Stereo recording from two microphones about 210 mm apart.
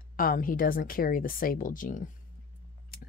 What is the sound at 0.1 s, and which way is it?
Speech, 40° left (ahead or behind).